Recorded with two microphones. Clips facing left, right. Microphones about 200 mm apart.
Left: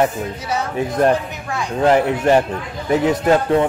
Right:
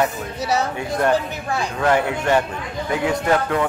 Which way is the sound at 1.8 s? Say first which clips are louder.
Left 5 dB; 30° left (ahead or behind).